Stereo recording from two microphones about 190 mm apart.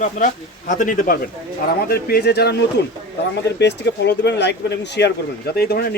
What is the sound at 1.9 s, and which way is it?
Speech, 55° left (ahead or behind).